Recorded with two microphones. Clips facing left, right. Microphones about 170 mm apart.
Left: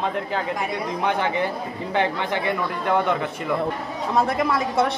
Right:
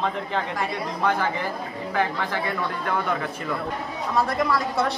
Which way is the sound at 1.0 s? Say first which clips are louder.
Left 1 dB; 20° left (ahead or behind).